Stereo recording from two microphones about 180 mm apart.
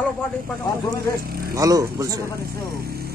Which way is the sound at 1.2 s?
55° right (ahead or behind).